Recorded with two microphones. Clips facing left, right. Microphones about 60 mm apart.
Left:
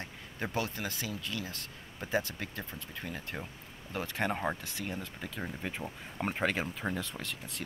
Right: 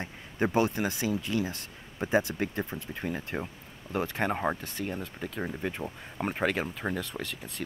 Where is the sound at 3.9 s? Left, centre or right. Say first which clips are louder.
Right 4 dB; centre.